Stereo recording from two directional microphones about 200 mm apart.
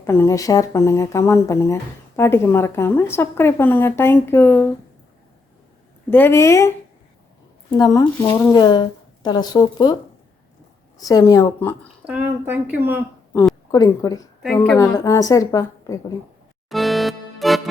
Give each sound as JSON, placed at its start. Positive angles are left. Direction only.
{"t": 0.0, "sound": "speech", "side_deg": 10}
{"t": 6.1, "sound": "speech", "side_deg": 10}
{"t": 11.0, "sound": "speech", "side_deg": 15}
{"t": 12.0, "sound": "speech", "side_deg": -10}
{"t": 13.7, "sound": "speech", "side_deg": 15}
{"t": 16.6, "sound": "music", "side_deg": 0}